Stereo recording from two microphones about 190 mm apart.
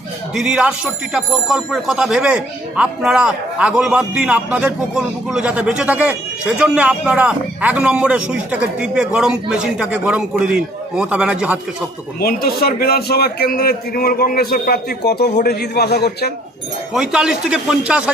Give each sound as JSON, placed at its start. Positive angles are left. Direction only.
{"t": 0.3, "sound": "speech", "side_deg": -5}
{"t": 12.2, "sound": "a man's voice", "side_deg": 55}
{"t": 16.9, "sound": "speech", "side_deg": -5}